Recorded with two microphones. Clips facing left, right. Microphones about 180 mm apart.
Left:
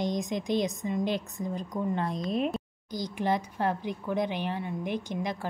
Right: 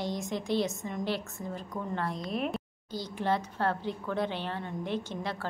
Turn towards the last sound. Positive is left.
turn(degrees=15)  # may be behind; listen again after turning